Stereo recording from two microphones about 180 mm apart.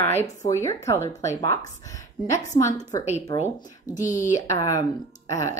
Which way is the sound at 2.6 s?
20° left (ahead or behind).